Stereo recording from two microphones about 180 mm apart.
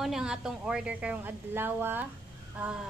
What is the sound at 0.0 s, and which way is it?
A woman's voice, 5° right (ahead or behind).